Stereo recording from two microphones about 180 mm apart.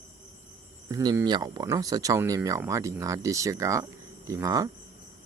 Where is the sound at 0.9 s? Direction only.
20° right (ahead or behind).